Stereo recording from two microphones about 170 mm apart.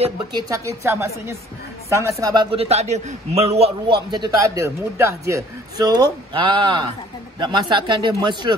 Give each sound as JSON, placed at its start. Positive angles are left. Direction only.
{"t": 0.5, "sound": "a woman's voice", "side_deg": -15}
{"t": 2.5, "sound": "a man's voice", "side_deg": -35}
{"t": 4.6, "sound": "a man's voice", "side_deg": -15}